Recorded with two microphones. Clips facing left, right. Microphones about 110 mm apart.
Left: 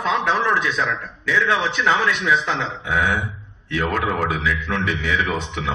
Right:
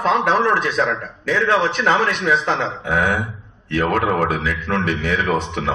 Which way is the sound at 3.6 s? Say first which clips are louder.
Right 4 dB; 45° right (ahead or behind).